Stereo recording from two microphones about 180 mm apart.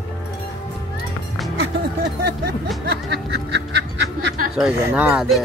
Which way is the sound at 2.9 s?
65° right (ahead or behind).